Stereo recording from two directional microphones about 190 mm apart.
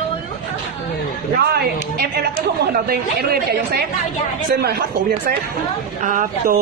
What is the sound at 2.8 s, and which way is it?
A woman's voice, 55° right (ahead or behind).